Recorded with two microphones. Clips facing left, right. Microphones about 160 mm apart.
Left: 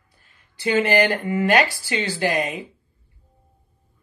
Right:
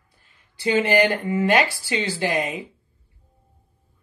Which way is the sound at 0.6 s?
20° right (ahead or behind).